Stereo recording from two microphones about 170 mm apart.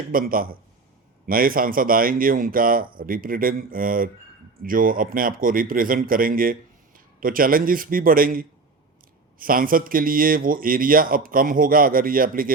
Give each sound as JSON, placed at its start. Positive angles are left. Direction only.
{"t": 0.1, "sound": "speech", "side_deg": -55}